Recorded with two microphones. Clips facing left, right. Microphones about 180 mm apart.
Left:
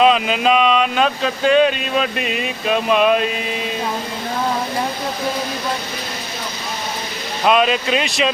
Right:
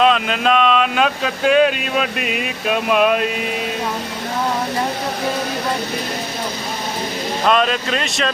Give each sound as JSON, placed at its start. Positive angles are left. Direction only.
{"t": 0.0, "sound": "speech", "side_deg": 5}
{"t": 7.4, "sound": "speech", "side_deg": 5}